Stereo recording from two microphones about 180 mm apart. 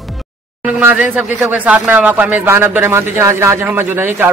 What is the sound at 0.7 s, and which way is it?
Speech, 10° right (ahead or behind).